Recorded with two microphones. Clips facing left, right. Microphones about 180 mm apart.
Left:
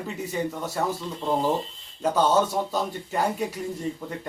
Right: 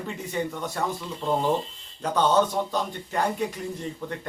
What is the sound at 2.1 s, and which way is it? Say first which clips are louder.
Speech: right 1 dB; 5° left (ahead or behind).